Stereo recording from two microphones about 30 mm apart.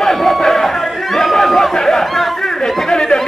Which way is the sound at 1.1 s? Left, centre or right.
Centre.